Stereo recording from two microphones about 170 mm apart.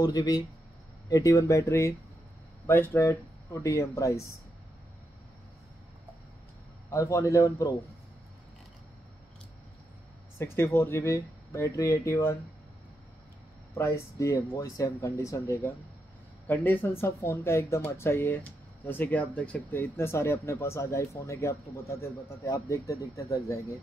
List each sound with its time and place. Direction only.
0.0 s speech: 25° left (ahead or behind)
6.9 s speech: 20° left (ahead or behind)
10.4 s speech: 15° left (ahead or behind)
13.7 s speech: 15° left (ahead or behind)